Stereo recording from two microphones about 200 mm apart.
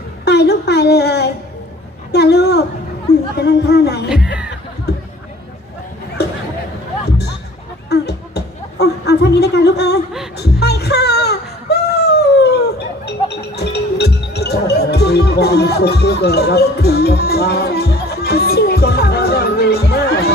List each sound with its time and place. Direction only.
0.3 s speech: 55° left (ahead or behind)
2.1 s a sound: 55° left (ahead or behind)
3.3 s speech: 55° left (ahead or behind)
4.9 s chatter: 55° left (ahead or behind)
7.9 s a sound: 55° left (ahead or behind)
10.3 s music: 55° left (ahead or behind)